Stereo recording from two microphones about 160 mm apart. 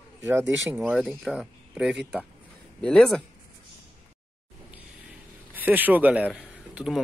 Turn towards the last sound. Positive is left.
turn(degrees=0)  # may be behind; listen again after turning